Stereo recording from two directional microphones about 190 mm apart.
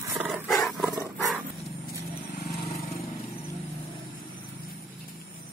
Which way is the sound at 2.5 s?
35° left (ahead or behind).